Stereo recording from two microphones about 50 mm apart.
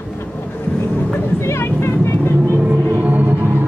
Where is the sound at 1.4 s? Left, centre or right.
Left.